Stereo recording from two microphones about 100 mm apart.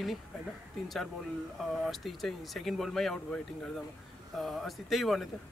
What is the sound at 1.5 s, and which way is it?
Speech, centre (ahead or behind).